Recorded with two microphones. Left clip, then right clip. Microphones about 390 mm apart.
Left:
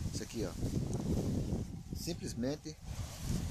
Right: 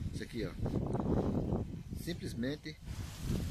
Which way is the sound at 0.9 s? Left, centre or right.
Right.